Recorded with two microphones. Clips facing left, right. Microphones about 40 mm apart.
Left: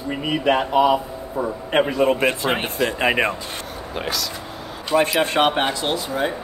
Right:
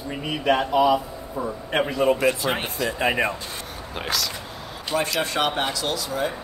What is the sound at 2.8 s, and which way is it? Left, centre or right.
Speech, left.